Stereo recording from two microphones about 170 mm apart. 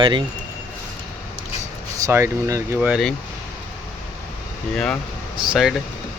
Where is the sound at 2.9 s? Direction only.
Centre (ahead or behind).